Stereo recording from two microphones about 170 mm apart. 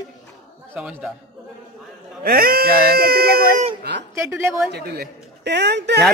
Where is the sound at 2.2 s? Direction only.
60° right (ahead or behind).